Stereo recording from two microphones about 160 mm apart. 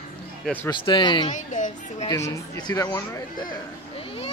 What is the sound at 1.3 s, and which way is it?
Speech, 50° left (ahead or behind).